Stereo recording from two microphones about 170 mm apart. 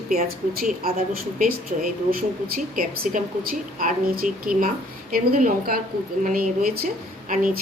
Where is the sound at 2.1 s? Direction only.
55° right (ahead or behind).